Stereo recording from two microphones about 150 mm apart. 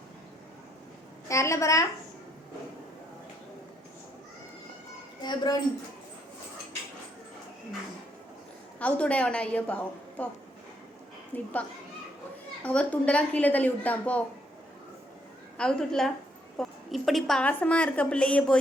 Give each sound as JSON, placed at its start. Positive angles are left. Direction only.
{"t": 1.3, "sound": "a woman's voice", "side_deg": 20}
{"t": 5.2, "sound": "a woman's voice", "side_deg": 30}
{"t": 8.8, "sound": "a woman's voice", "side_deg": 10}
{"t": 11.3, "sound": "a woman's voice", "side_deg": 15}
{"t": 12.6, "sound": "a woman's voice", "side_deg": 10}
{"t": 15.5, "sound": "a woman's voice", "side_deg": 5}